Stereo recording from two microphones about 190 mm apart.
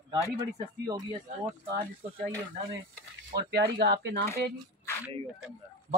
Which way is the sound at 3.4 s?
60° right (ahead or behind).